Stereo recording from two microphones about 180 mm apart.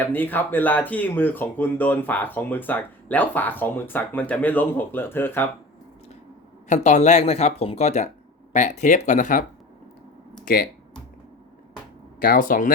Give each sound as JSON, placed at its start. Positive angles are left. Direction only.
{"t": 0.0, "sound": "speech", "side_deg": 10}
{"t": 6.7, "sound": "speech", "side_deg": 40}
{"t": 10.4, "sound": "speech", "side_deg": 55}
{"t": 12.2, "sound": "speech", "side_deg": 50}